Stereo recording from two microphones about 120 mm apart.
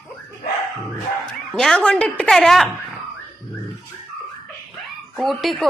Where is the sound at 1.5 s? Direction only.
5° left (ahead or behind).